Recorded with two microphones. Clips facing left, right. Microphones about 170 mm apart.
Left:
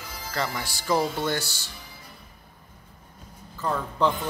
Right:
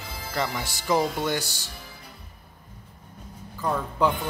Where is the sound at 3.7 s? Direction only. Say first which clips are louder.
Even; 10° right (ahead or behind).